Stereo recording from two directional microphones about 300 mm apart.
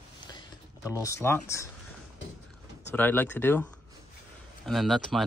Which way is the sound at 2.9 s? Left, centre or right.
Centre.